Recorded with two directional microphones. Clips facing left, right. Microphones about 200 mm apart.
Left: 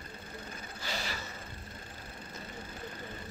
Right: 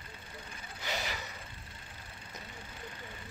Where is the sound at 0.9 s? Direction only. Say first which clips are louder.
Right 1 dB; 15° right (ahead or behind).